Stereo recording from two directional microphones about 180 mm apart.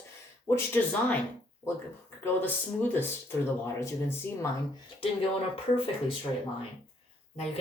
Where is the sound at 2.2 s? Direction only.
10° left (ahead or behind).